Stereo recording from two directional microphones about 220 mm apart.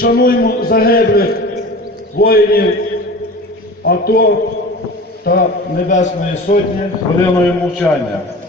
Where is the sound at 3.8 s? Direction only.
45° left (ahead or behind).